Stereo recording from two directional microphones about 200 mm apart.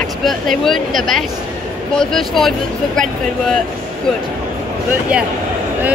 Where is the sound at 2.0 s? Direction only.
Centre (ahead or behind).